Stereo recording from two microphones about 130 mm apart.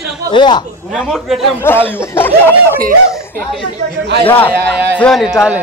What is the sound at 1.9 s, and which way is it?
Speech, 15° left (ahead or behind).